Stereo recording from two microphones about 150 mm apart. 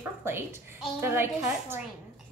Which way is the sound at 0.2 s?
15° right (ahead or behind).